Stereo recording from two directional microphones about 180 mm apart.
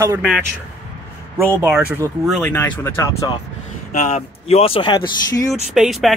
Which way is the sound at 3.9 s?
40° left (ahead or behind).